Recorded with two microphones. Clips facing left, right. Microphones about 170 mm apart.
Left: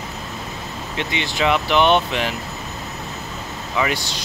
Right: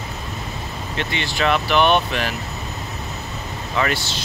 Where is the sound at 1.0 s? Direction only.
15° left (ahead or behind).